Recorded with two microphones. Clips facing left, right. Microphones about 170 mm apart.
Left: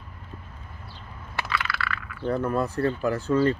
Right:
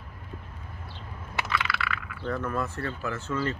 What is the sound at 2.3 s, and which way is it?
Speech, 35° left (ahead or behind).